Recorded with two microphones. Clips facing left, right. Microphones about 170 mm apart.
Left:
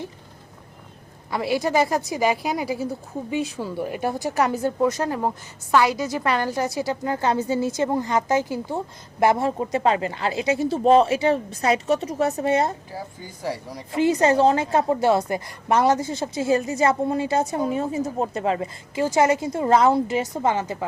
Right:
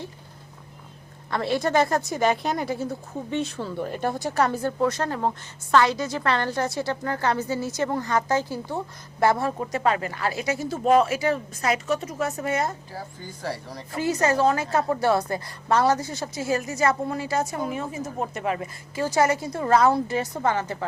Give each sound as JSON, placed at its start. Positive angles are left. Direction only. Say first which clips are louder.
{"t": 1.3, "sound": "a woman's voice", "louder": "left 1 dB", "side_deg": 10}
{"t": 12.9, "sound": "speech", "louder": "left 2 dB", "side_deg": 15}